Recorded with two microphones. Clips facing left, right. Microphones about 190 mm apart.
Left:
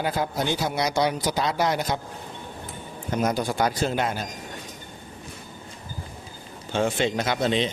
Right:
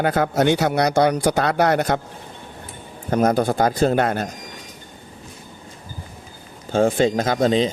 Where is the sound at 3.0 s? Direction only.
55° right (ahead or behind).